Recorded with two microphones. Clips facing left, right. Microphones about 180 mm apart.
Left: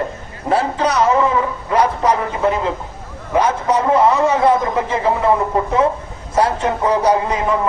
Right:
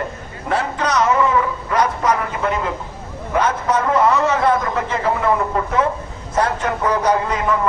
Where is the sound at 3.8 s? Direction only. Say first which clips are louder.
Left 2 dB; 25° left (ahead or behind).